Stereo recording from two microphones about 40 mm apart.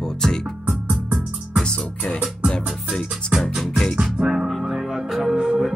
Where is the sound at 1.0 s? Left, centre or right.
Right.